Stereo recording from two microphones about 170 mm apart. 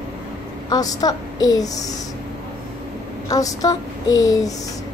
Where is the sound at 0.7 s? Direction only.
20° left (ahead or behind).